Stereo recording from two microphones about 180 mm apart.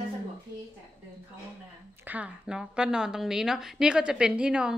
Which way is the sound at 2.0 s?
10° right (ahead or behind).